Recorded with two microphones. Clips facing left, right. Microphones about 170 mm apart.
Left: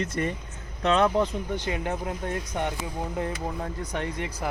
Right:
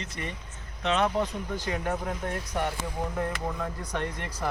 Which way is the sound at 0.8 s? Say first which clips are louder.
Left 4 dB; 40° left (ahead or behind).